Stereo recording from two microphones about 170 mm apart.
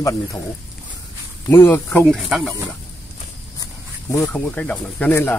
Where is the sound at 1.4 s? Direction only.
15° left (ahead or behind).